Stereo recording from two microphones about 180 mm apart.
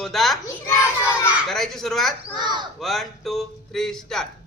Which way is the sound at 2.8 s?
Centre (ahead or behind).